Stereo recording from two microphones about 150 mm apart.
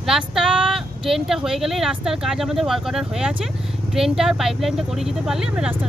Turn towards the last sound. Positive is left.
turn(degrees=-10)  # may be behind; listen again after turning